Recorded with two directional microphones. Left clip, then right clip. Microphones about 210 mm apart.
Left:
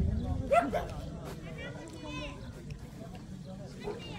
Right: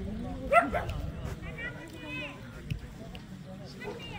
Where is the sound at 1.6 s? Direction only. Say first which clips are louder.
Right 5 dB; 35° left (ahead or behind).